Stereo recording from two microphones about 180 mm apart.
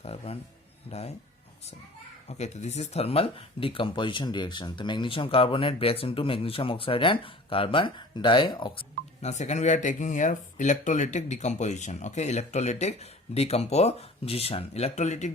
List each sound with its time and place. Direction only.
0.0 s a man's voice: 35° left (ahead or behind)
2.2 s speech: 40° left (ahead or behind)